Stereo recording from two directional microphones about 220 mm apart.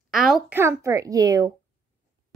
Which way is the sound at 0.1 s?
Centre (ahead or behind).